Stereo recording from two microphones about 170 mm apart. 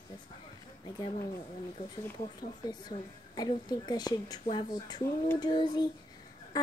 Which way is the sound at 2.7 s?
25° left (ahead or behind).